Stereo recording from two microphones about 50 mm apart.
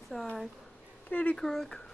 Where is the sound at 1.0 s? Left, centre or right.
Left.